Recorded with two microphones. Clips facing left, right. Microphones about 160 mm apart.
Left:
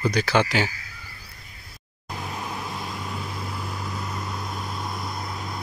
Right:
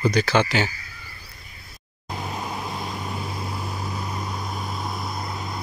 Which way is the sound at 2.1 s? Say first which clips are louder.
Right 2 dB; 20° right (ahead or behind).